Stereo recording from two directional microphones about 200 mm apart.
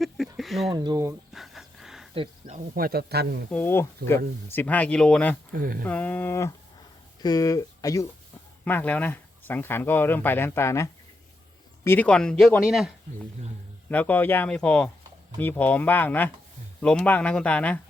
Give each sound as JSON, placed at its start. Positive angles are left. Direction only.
{"t": 0.3, "sound": "a sound", "side_deg": 0}
{"t": 0.7, "sound": "speech", "side_deg": -20}
{"t": 1.3, "sound": "a sound", "side_deg": 0}
{"t": 2.1, "sound": "speech", "side_deg": -25}
{"t": 2.7, "sound": "a man's voice", "side_deg": -50}
{"t": 3.5, "sound": "speech", "side_deg": 10}
{"t": 5.5, "sound": "a man's voice", "side_deg": -45}
{"t": 5.8, "sound": "speech", "side_deg": 10}
{"t": 13.9, "sound": "speech", "side_deg": 10}